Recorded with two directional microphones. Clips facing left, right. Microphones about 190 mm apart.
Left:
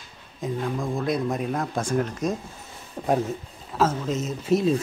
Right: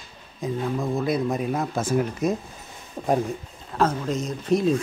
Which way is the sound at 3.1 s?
5° left (ahead or behind).